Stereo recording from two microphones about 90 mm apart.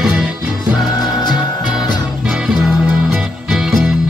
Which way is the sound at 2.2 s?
5° right (ahead or behind).